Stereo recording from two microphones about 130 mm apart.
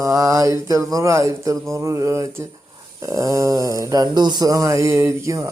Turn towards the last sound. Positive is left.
turn(degrees=-25)  # may be behind; listen again after turning